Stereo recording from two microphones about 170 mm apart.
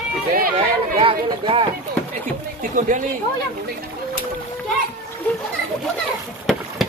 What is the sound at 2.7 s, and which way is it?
Speech, 50° right (ahead or behind).